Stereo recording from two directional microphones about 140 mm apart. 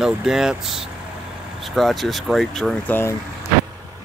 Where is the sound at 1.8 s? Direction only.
Centre (ahead or behind).